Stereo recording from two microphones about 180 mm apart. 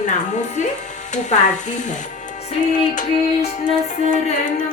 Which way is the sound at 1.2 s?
40° left (ahead or behind).